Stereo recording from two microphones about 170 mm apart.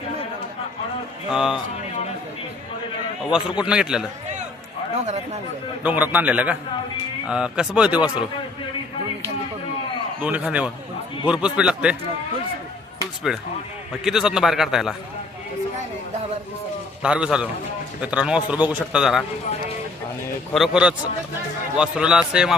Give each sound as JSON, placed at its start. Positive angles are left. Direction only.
{"t": 1.3, "sound": "a man's voice", "side_deg": -5}
{"t": 3.6, "sound": "a man's voice", "side_deg": -5}
{"t": 4.9, "sound": "speech", "side_deg": -40}
{"t": 5.8, "sound": "a man's voice", "side_deg": -10}
{"t": 10.2, "sound": "a man's voice", "side_deg": -10}
{"t": 13.3, "sound": "a man's voice", "side_deg": 0}
{"t": 17.0, "sound": "a man's voice", "side_deg": -5}
{"t": 20.5, "sound": "a man's voice", "side_deg": -5}